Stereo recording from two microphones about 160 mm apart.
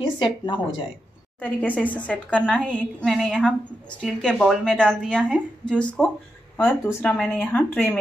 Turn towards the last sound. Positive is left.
turn(degrees=10)  # may be behind; listen again after turning